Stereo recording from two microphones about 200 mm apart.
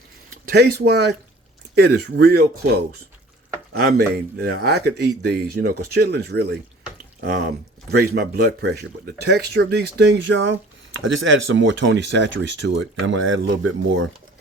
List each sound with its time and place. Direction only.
0.5 s speech: 55° right (ahead or behind)
3.9 s speech: 55° right (ahead or behind)
11.0 s speech: 75° right (ahead or behind)